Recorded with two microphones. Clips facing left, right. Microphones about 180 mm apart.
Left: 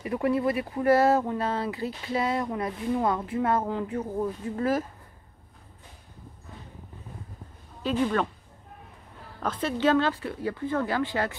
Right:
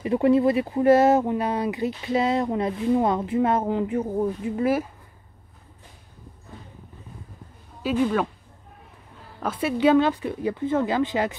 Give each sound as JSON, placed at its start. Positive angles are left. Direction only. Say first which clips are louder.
{"t": 0.0, "sound": "speech", "louder": "right 6 dB", "side_deg": -25}
{"t": 7.8, "sound": "speech", "louder": "right 3 dB", "side_deg": -5}
{"t": 9.4, "sound": "speech", "louder": "right 4 dB", "side_deg": -10}